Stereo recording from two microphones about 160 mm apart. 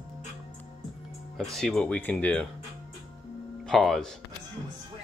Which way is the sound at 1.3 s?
Centre (ahead or behind).